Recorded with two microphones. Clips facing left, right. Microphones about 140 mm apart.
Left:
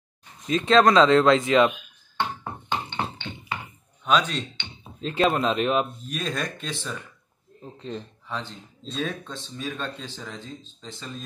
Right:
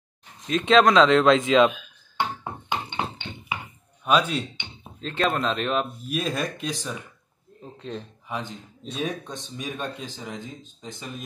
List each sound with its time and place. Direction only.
0.5 s speech: centre (ahead or behind)
2.7 s a sound: 10° right (ahead or behind)
4.0 s speech: 5° right (ahead or behind)
5.0 s speech: 5° left (ahead or behind)
6.0 s speech: 5° right (ahead or behind)
7.6 s speech: centre (ahead or behind)
8.3 s speech: 15° right (ahead or behind)